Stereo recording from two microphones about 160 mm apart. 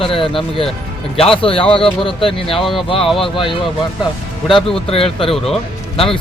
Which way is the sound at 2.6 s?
Centre (ahead or behind).